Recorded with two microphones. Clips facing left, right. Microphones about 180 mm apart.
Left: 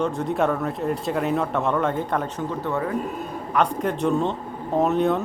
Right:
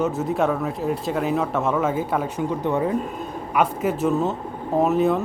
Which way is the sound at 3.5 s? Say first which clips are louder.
Right 1 dB; 5° right (ahead or behind).